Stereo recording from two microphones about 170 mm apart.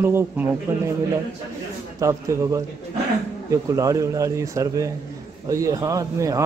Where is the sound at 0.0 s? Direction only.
15° right (ahead or behind).